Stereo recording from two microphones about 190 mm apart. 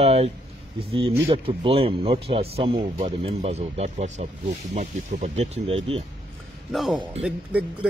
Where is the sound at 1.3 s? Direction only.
30° right (ahead or behind).